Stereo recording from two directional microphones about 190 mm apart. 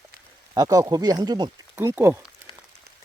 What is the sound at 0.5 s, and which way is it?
Speech, 20° right (ahead or behind).